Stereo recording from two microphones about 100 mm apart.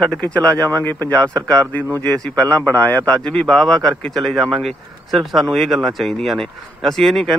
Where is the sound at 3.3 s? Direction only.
5° left (ahead or behind).